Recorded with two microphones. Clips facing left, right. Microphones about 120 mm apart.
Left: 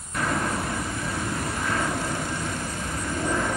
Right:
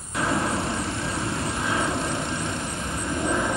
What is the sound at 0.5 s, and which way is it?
Vehicle, 25° right (ahead or behind).